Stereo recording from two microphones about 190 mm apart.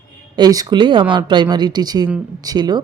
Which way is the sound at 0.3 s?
20° right (ahead or behind).